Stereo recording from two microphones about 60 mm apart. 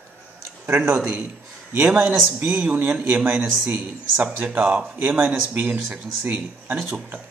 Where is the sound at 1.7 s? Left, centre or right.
Right; by 4.8 s centre.